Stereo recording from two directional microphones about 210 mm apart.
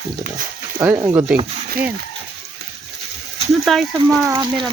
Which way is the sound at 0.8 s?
15° right (ahead or behind).